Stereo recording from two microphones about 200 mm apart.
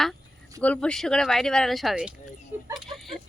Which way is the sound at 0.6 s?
5° left (ahead or behind).